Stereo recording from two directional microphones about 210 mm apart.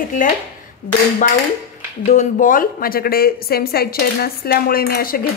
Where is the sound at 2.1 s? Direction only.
35° left (ahead or behind).